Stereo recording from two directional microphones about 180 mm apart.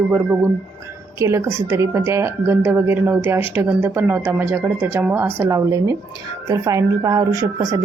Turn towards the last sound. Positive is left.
turn(degrees=-20)  # may be behind; listen again after turning